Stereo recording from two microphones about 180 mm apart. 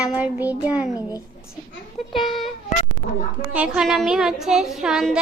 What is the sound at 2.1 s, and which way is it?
A child's voice, centre (ahead or behind).